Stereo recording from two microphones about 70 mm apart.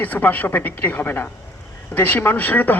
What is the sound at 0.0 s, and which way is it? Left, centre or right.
Speech, left.